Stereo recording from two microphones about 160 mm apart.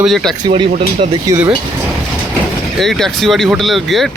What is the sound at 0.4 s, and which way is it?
Speech, 30° right (ahead or behind).